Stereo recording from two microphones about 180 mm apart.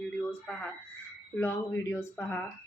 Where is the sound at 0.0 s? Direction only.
5° left (ahead or behind).